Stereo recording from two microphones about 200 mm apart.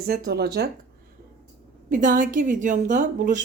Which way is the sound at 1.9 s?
40° right (ahead or behind).